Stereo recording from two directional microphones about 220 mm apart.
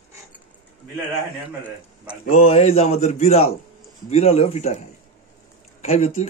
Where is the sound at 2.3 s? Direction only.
25° left (ahead or behind).